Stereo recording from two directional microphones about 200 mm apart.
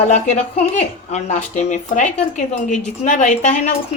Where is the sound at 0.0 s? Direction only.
35° left (ahead or behind).